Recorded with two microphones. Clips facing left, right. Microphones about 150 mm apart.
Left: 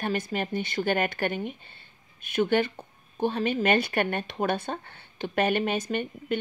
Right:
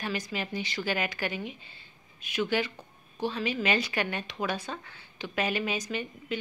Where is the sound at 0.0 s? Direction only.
50° left (ahead or behind).